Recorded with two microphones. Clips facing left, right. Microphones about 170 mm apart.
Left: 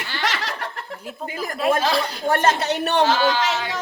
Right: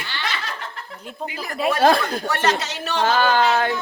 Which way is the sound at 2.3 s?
50° left (ahead or behind).